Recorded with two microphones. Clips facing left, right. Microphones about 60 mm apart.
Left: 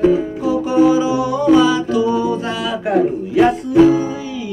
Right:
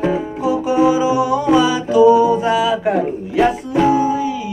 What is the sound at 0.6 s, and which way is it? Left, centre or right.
Music, centre.